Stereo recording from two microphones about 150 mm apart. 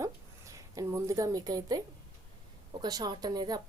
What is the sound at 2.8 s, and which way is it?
Speech, 25° right (ahead or behind).